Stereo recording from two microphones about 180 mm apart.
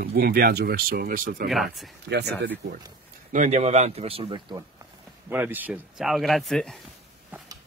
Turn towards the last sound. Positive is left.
turn(degrees=0)  # may be behind; listen again after turning